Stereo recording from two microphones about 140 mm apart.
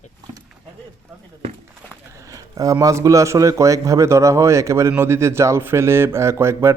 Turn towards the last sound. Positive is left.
turn(degrees=-20)  # may be behind; listen again after turning